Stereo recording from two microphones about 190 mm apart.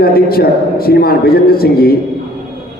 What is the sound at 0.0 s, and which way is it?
A man's voice, 55° left (ahead or behind).